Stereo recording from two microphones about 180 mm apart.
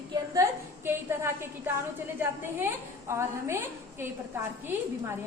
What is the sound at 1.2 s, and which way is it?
A woman's voice, 15° right (ahead or behind).